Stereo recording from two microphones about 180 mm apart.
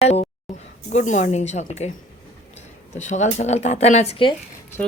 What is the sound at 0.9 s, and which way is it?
Speech, 40° left (ahead or behind).